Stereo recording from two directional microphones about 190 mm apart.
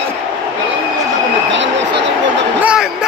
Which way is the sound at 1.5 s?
75° right (ahead or behind).